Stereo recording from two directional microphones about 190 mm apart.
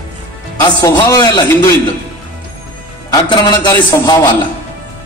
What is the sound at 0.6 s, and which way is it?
A man's voice, 20° left (ahead or behind).